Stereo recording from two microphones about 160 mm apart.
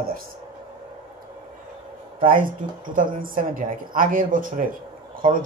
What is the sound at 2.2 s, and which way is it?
A man's voice, 60° right (ahead or behind).